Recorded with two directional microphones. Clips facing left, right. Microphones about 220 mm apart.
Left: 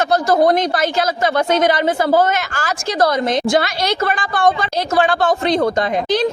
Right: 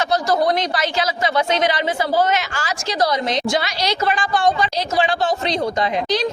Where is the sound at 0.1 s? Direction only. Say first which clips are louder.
Left 5 dB; 50° left (ahead or behind).